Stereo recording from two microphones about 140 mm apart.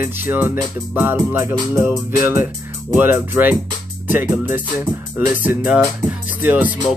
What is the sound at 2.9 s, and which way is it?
Music, 15° right (ahead or behind).